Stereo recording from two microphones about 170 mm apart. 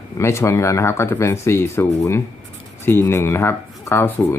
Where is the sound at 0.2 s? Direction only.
15° left (ahead or behind).